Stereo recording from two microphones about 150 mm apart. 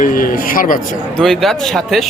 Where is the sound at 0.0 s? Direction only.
65° left (ahead or behind).